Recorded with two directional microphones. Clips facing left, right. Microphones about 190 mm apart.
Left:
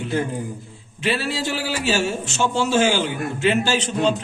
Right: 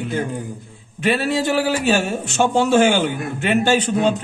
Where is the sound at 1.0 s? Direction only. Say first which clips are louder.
Right 5 dB; 55° right (ahead or behind).